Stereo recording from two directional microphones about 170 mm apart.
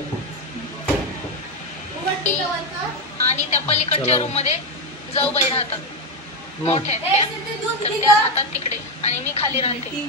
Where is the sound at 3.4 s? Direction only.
40° left (ahead or behind).